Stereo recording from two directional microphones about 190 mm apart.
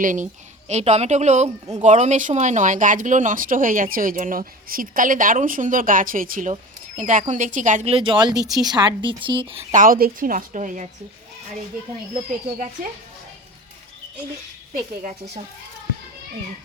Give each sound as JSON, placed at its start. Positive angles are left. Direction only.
{"t": 0.0, "sound": "speech", "side_deg": -45}
{"t": 9.7, "sound": "speech", "side_deg": -45}